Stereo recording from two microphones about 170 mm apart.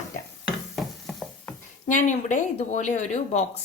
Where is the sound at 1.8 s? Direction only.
45° left (ahead or behind).